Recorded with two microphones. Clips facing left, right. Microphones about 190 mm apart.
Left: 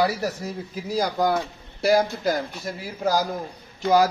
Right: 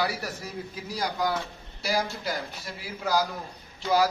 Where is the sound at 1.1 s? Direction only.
50° left (ahead or behind).